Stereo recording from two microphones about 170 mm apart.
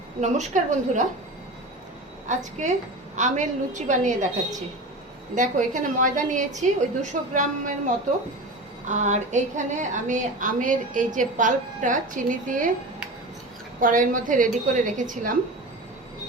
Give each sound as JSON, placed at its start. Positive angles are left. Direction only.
{"t": 0.2, "sound": "a woman's voice", "side_deg": -45}
{"t": 3.2, "sound": "a woman's voice", "side_deg": -45}
{"t": 5.3, "sound": "a woman's voice", "side_deg": -50}
{"t": 13.7, "sound": "a woman's voice", "side_deg": -50}